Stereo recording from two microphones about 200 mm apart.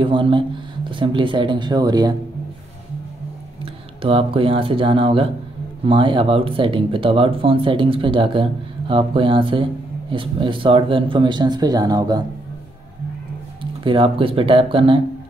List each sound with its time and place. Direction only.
0.0 s speech: 25° right (ahead or behind)
3.6 s speech: 30° right (ahead or behind)
13.6 s speech: 25° right (ahead or behind)